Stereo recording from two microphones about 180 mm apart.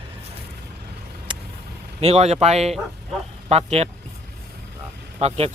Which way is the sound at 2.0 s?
35° right (ahead or behind).